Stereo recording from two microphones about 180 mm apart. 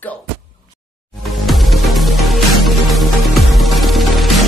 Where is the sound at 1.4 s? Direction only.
Centre (ahead or behind).